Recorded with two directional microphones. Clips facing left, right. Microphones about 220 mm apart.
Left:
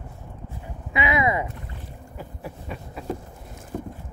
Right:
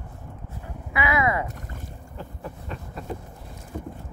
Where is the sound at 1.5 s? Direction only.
45° right (ahead or behind).